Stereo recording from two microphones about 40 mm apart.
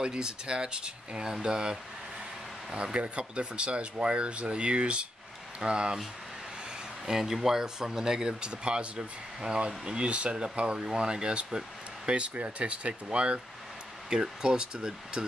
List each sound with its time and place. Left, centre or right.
0.0 s speech: right
7.1 s speech: centre
12.1 s speech: right
14.1 s speech: centre